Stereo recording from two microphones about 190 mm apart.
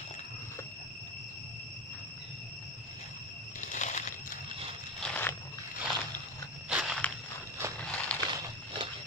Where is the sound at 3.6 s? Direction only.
40° left (ahead or behind).